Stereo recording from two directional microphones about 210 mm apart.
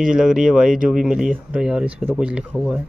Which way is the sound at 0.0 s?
5° right (ahead or behind).